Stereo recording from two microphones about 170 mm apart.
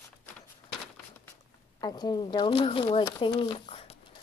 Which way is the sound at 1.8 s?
25° left (ahead or behind).